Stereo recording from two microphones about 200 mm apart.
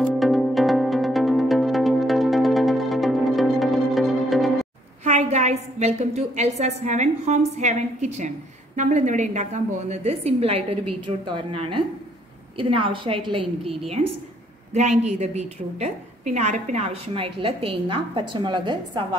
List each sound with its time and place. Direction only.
0.2 s music: centre (ahead or behind)
5.0 s a woman's voice: 35° right (ahead or behind)